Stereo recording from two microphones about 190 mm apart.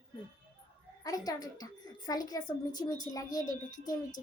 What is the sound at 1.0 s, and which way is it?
A woman's voice, 20° left (ahead or behind).